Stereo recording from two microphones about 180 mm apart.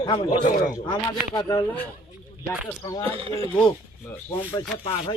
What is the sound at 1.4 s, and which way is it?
Speech, 20° left (ahead or behind).